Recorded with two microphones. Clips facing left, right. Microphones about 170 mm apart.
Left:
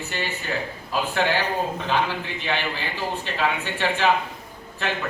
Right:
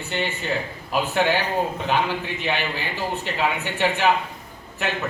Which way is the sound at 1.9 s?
15° right (ahead or behind).